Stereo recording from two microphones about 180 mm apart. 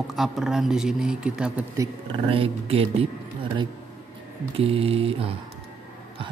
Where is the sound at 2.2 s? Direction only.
30° right (ahead or behind).